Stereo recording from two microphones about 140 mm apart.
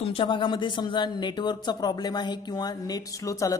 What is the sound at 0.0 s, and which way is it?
A man's voice, 40° left (ahead or behind).